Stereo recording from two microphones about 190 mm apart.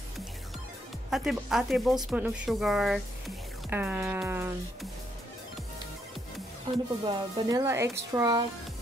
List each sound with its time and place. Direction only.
1.1 s a woman's voice: centre (ahead or behind)
7.1 s speech: 25° right (ahead or behind)
7.6 s a woman's voice: 15° right (ahead or behind)